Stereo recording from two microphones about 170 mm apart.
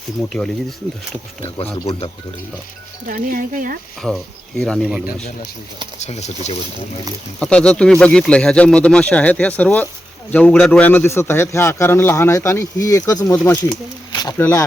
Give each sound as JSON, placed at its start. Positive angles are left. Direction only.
{"t": 1.7, "sound": "speech", "side_deg": 30}
{"t": 3.1, "sound": "speech", "side_deg": -55}
{"t": 4.0, "sound": "speech", "side_deg": 0}
{"t": 6.0, "sound": "speech", "side_deg": 40}
{"t": 7.3, "sound": "a man's voice", "side_deg": 5}
{"t": 14.2, "sound": "a sound", "side_deg": 25}